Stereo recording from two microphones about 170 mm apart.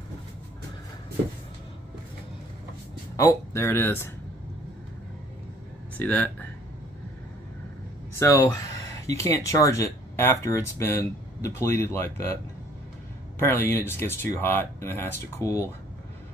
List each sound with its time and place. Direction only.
3.2 s speech: 20° left (ahead or behind)
5.9 s speech: 10° left (ahead or behind)
8.2 s speech: 15° left (ahead or behind)
13.4 s speech: 15° left (ahead or behind)